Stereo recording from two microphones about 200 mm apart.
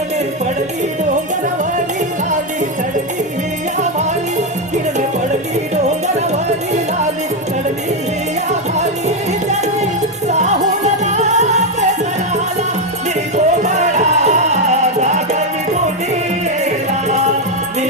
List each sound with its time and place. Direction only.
8.7 s music: 35° right (ahead or behind)
13.3 s music: 35° right (ahead or behind)